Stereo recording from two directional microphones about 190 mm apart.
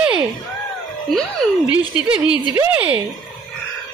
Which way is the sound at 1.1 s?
Centre (ahead or behind).